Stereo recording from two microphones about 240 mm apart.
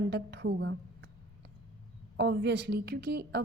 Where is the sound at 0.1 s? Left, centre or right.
Right.